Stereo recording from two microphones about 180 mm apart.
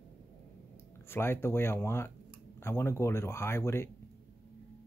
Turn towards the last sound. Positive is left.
turn(degrees=15)  # may be behind; listen again after turning